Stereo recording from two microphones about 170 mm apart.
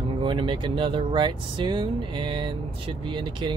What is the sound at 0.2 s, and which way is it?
Speech, 30° right (ahead or behind).